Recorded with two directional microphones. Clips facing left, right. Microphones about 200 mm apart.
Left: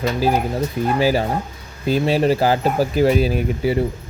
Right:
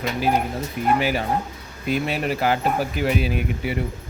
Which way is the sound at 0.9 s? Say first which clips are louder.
Left 4 dB; 35° left (ahead or behind).